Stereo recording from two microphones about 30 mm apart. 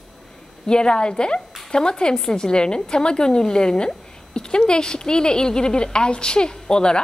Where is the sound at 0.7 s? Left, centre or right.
Left.